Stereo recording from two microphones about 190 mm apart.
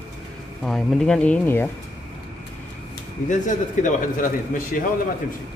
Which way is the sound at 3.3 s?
40° left (ahead or behind).